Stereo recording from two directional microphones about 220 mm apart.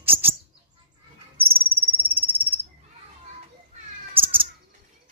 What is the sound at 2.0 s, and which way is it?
Cricket, 10° right (ahead or behind).